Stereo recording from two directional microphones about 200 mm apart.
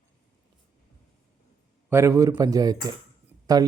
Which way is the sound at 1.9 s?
15° right (ahead or behind).